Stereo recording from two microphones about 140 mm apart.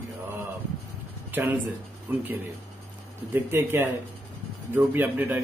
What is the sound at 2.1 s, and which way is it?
Speech, 15° right (ahead or behind).